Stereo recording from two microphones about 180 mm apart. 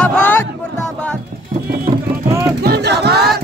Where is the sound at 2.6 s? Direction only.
65° right (ahead or behind).